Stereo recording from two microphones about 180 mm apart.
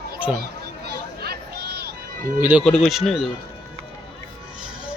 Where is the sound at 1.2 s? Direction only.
60° right (ahead or behind).